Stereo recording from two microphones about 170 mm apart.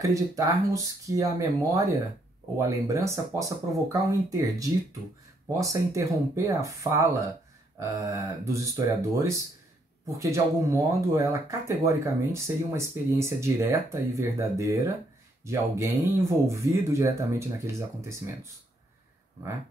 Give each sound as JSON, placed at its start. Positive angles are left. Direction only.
{"t": 0.0, "sound": "speech", "side_deg": -20}